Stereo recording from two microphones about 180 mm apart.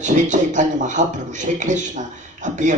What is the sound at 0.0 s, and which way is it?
A man's voice, 45° right (ahead or behind).